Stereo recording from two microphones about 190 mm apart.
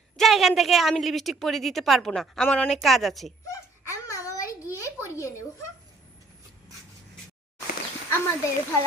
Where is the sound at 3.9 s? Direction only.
15° left (ahead or behind).